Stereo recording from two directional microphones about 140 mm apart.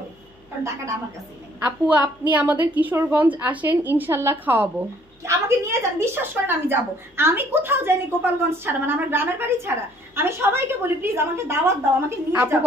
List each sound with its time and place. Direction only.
1.6 s a woman's voice: 10° right (ahead or behind)